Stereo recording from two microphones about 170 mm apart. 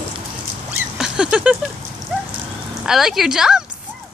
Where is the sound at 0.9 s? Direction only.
5° right (ahead or behind).